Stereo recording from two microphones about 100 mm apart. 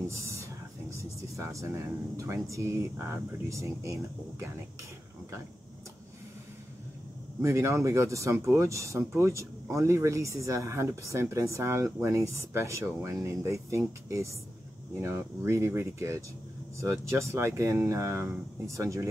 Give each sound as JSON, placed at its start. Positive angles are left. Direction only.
{"t": 0.9, "sound": "vehicle", "side_deg": -30}
{"t": 2.1, "sound": "speech", "side_deg": -30}
{"t": 7.4, "sound": "speech", "side_deg": -30}